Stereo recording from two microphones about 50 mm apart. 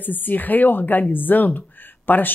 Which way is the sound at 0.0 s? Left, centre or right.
Left.